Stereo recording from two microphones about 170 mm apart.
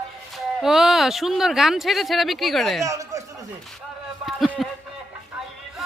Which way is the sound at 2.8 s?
20° right (ahead or behind).